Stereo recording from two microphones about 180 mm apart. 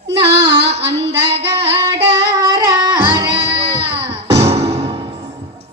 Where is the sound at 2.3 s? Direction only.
20° right (ahead or behind).